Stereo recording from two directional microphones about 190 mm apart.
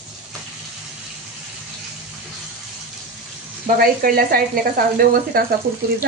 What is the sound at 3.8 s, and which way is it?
Speech, 50° right (ahead or behind).